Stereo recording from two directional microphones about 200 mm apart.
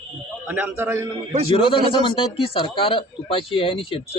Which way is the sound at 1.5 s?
25° left (ahead or behind).